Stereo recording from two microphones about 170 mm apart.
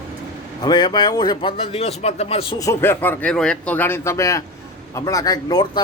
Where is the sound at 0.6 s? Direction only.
25° left (ahead or behind).